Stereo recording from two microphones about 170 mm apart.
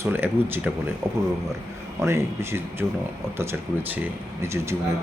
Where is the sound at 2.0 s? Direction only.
15° right (ahead or behind).